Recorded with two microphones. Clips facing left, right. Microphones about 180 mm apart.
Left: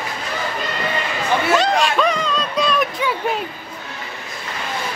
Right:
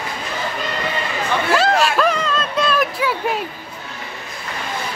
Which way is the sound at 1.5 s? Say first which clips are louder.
Right 2 dB; 5° right (ahead or behind).